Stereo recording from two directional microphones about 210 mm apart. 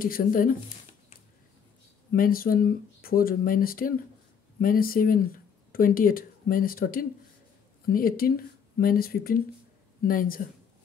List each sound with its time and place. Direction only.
0.0 s speech: 40° left (ahead or behind)
2.1 s speech: 45° left (ahead or behind)